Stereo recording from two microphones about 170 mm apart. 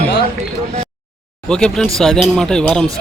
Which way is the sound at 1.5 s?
5° left (ahead or behind).